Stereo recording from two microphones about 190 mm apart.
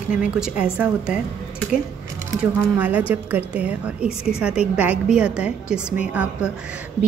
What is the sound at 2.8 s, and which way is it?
A woman's voice, 10° right (ahead or behind).